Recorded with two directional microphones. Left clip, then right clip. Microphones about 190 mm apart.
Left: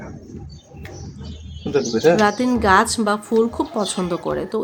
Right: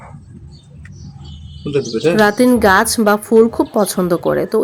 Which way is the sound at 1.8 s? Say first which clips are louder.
Right 2 dB; 35° right (ahead or behind).